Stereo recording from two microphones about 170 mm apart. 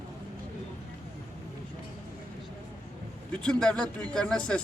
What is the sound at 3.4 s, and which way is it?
Speech, 5° left (ahead or behind).